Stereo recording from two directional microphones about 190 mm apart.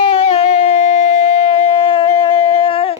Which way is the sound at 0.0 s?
30° left (ahead or behind).